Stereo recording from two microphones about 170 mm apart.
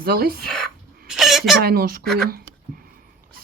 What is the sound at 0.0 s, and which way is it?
Speech, 65° right (ahead or behind).